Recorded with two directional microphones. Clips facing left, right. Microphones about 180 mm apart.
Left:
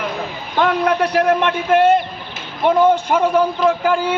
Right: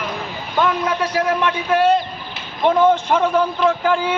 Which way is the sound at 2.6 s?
10° left (ahead or behind).